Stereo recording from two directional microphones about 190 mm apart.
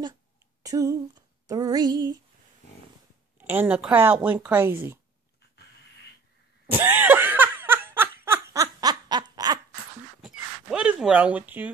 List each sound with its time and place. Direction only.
0.6 s a sound: 15° right (ahead or behind)
3.3 s speech: 10° right (ahead or behind)
6.7 s laughter: 10° right (ahead or behind)
10.2 s dog: 5° right (ahead or behind)